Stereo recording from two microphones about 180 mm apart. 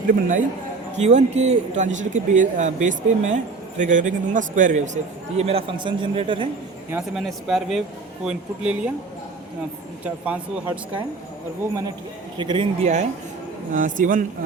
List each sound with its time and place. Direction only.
0.1 s speech: 45° right (ahead or behind)
5.4 s a man's voice: 35° right (ahead or behind)
7.2 s speech: centre (ahead or behind)
10.2 s speech: 10° right (ahead or behind)
11.7 s a man's voice: 20° right (ahead or behind); by 14.3 s 45° right (ahead or behind)